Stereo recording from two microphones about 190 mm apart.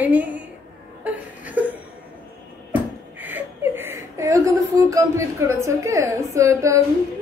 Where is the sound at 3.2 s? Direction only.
10° right (ahead or behind).